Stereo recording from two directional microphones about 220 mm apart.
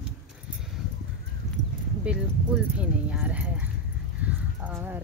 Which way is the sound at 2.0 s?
5° right (ahead or behind).